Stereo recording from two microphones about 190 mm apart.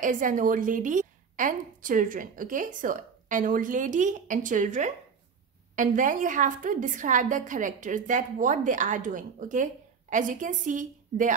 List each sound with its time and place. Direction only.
0.0 s a woman's voice: 45° right (ahead or behind)